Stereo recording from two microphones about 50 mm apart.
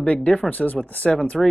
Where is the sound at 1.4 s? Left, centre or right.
Centre.